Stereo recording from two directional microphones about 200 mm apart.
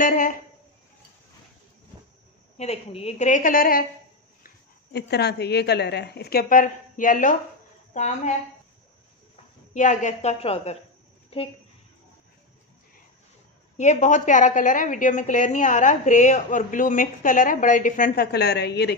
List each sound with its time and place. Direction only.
0.0 s speech: 40° left (ahead or behind)
2.5 s a woman's voice: 30° left (ahead or behind)
4.9 s a woman's voice: 55° left (ahead or behind); by 8.4 s 35° left (ahead or behind)
9.8 s a woman's voice: 35° left (ahead or behind)
13.7 s a woman's voice: 35° left (ahead or behind); by 18.9 s 55° left (ahead or behind)